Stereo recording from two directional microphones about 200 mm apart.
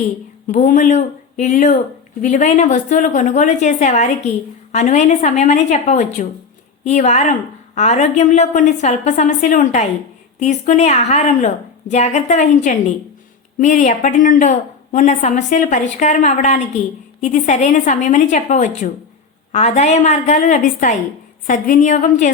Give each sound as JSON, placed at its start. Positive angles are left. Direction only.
{"t": 0.4, "sound": "a woman's voice", "side_deg": 40}